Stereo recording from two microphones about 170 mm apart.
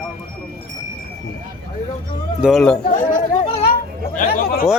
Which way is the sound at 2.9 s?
50° left (ahead or behind).